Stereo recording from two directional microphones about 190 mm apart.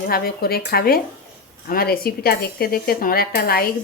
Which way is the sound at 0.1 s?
55° left (ahead or behind).